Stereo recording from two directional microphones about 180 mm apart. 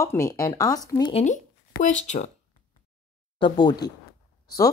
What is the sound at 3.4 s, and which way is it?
Speech, 25° left (ahead or behind).